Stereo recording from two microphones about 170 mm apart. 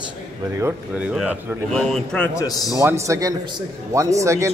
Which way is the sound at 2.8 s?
15° right (ahead or behind).